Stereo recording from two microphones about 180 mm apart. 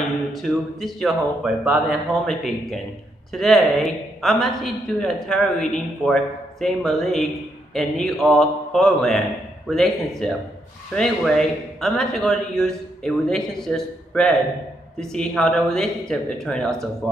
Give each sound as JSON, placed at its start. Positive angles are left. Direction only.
{"t": 0.3, "sound": "a woman's voice", "side_deg": 0}